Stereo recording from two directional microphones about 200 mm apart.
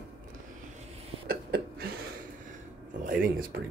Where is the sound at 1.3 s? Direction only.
50° right (ahead or behind).